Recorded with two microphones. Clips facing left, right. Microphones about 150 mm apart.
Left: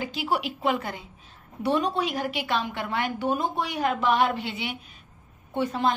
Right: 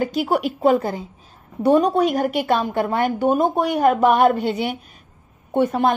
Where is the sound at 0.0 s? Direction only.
50° right (ahead or behind).